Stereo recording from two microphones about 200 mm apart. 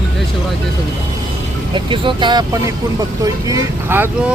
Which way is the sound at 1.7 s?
25° right (ahead or behind).